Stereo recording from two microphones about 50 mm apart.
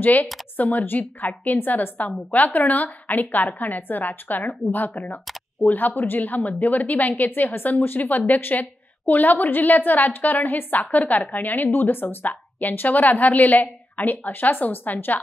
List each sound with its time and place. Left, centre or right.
0.0 s a woman's voice: left